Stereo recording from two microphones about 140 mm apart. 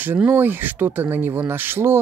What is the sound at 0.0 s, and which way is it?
Speech, 10° right (ahead or behind).